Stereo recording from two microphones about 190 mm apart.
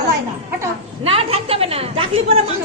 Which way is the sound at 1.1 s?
30° right (ahead or behind).